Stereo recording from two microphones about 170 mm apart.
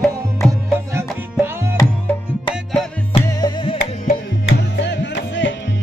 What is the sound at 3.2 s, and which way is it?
Music, 25° left (ahead or behind).